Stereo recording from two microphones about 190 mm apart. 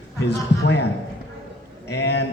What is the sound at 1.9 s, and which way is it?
Speech, 65° left (ahead or behind).